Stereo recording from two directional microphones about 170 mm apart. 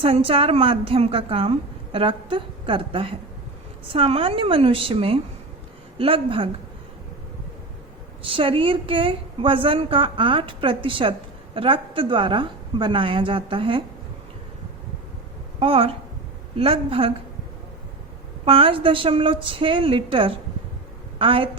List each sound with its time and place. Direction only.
0.0 s a woman's voice: 35° right (ahead or behind)
8.2 s a woman's voice: 30° right (ahead or behind)
15.6 s a woman's voice: 35° right (ahead or behind)
18.4 s a woman's voice: 35° right (ahead or behind)